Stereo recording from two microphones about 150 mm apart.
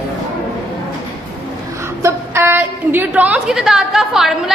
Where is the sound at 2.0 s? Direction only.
15° right (ahead or behind).